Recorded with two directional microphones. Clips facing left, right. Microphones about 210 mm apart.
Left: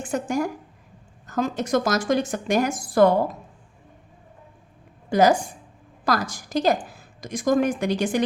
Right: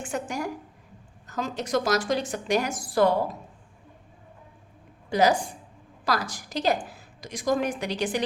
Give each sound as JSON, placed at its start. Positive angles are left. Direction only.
{"t": 0.0, "sound": "a woman's voice", "side_deg": 45}
{"t": 5.0, "sound": "a woman's voice", "side_deg": 50}